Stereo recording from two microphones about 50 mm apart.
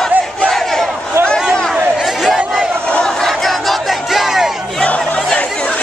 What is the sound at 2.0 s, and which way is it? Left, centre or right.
Chatter, centre.